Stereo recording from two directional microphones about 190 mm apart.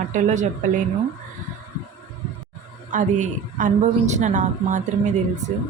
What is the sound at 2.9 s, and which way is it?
A woman's voice, 40° right (ahead or behind).